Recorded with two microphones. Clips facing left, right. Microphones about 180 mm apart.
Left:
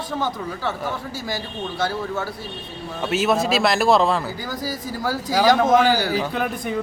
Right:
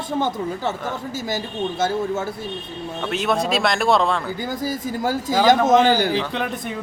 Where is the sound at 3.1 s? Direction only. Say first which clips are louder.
Left 2 dB; 5° left (ahead or behind).